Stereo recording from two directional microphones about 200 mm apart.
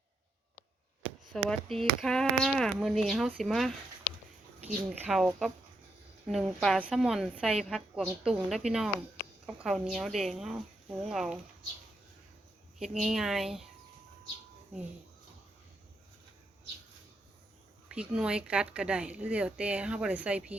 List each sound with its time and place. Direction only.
1.3 s speech: 5° left (ahead or behind)
4.9 s speech: 5° right (ahead or behind)
12.8 s speech: centre (ahead or behind)
17.8 s speech: 5° right (ahead or behind)